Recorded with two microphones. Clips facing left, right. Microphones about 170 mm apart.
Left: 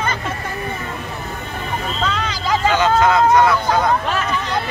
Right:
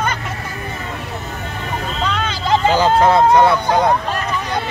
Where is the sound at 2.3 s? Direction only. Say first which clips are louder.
Right 4 dB; 30° right (ahead or behind).